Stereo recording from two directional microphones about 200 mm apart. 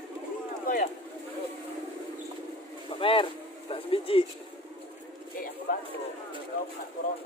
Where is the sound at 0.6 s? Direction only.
45° left (ahead or behind).